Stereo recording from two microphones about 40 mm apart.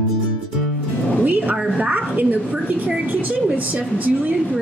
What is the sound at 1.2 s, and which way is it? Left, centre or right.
A woman's voice, right.